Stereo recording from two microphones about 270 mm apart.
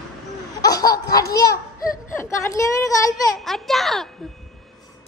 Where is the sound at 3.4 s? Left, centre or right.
Centre.